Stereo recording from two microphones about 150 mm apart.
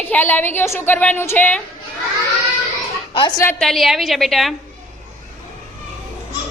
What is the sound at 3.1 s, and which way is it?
Speech, 30° left (ahead or behind).